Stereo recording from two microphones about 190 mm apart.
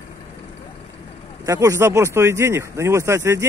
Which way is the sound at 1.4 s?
15° right (ahead or behind).